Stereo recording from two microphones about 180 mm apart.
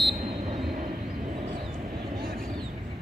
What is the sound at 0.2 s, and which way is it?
Train, 40° right (ahead or behind).